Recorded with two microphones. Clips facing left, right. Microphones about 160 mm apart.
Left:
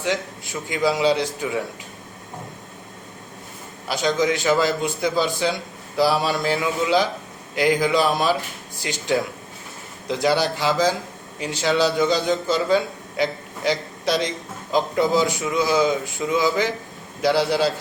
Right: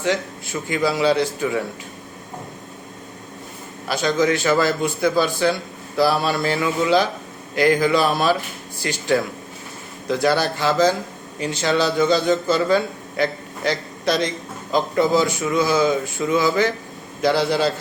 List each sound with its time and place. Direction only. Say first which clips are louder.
0.0 s a man's voice: right 3 dB; 15° left (ahead or behind)
3.8 s a man's voice: right 2 dB; 15° left (ahead or behind)